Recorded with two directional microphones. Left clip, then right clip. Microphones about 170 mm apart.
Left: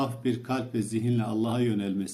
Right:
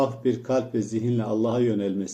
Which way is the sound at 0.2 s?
50° left (ahead or behind).